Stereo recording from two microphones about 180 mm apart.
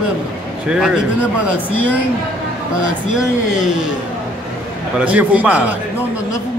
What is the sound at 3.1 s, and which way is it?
Speech, 5° right (ahead or behind).